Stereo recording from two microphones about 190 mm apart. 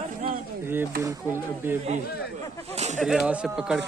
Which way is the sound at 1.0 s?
10° right (ahead or behind).